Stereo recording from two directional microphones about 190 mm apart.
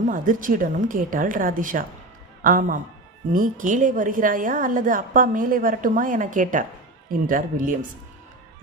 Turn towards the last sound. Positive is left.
turn(degrees=-45)  # may be behind; listen again after turning